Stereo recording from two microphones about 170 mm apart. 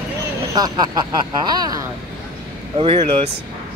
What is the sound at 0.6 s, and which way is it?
Speech, 25° right (ahead or behind).